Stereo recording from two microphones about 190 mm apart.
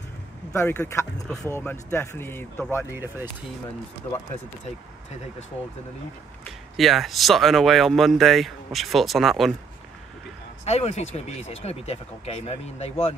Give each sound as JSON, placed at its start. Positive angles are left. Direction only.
{"t": 0.5, "sound": "speech", "side_deg": 10}
{"t": 2.9, "sound": "speech", "side_deg": -10}
{"t": 6.4, "sound": "speech", "side_deg": 0}
{"t": 10.6, "sound": "speech", "side_deg": 35}